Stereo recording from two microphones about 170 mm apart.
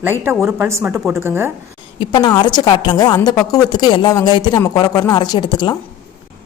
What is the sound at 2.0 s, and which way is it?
A woman's voice, 30° left (ahead or behind).